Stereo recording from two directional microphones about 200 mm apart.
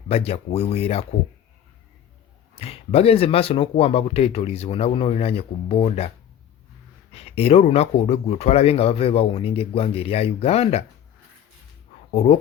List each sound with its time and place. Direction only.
0.1 s speech: 30° left (ahead or behind)
2.6 s speech: 30° left (ahead or behind)
7.1 s speech: 30° left (ahead or behind)
12.1 s speech: 35° left (ahead or behind)